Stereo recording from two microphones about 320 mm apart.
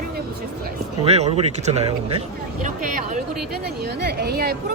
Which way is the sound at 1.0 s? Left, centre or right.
Centre.